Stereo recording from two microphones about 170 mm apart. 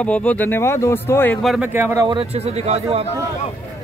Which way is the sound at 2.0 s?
30° right (ahead or behind).